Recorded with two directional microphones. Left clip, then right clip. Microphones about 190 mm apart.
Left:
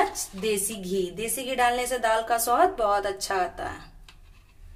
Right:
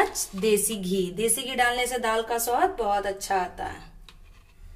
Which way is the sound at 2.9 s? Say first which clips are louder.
Even; 20° left (ahead or behind).